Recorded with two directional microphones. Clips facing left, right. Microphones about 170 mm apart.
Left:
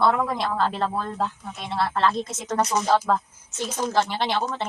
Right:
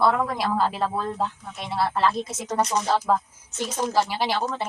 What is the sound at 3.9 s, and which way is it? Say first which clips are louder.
Speech: even; 5° right (ahead or behind).